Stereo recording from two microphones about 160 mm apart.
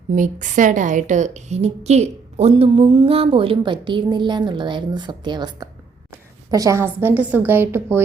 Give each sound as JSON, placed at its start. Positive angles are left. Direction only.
{"t": 0.1, "sound": "a woman's voice", "side_deg": -55}